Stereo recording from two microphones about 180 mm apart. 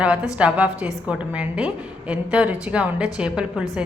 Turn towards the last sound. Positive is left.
turn(degrees=-5)  # may be behind; listen again after turning